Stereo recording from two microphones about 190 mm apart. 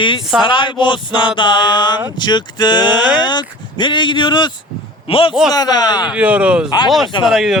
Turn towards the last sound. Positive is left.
turn(degrees=0)  # may be behind; listen again after turning